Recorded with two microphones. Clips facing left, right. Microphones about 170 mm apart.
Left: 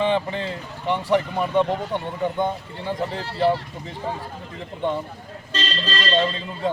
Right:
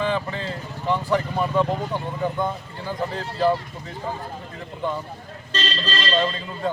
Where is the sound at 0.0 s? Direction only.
20° left (ahead or behind).